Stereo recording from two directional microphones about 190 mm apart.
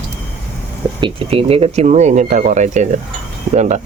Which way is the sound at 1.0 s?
30° right (ahead or behind).